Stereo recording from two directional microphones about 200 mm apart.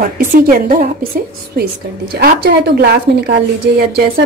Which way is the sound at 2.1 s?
50° right (ahead or behind).